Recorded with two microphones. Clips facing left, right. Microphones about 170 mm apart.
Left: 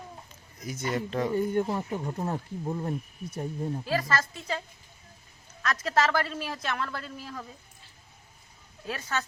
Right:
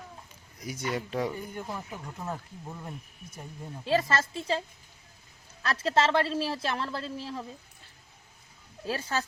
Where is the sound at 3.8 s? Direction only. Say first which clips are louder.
Right 5 dB; 25° right (ahead or behind).